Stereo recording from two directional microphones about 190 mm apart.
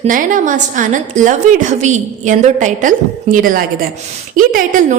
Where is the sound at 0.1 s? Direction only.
45° right (ahead or behind).